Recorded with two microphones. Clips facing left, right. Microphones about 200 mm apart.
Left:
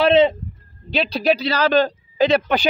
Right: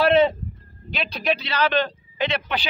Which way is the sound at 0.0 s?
20° left (ahead or behind).